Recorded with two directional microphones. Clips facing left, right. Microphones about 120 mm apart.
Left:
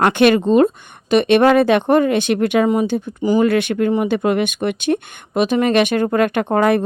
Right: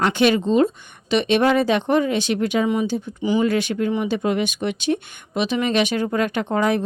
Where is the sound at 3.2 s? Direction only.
40° left (ahead or behind).